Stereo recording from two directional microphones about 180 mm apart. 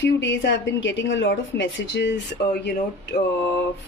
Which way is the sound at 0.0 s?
90° left.